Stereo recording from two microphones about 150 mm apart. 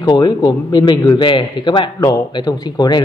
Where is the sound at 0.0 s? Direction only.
30° left (ahead or behind).